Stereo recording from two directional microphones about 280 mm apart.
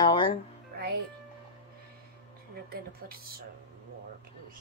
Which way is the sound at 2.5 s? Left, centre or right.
Right.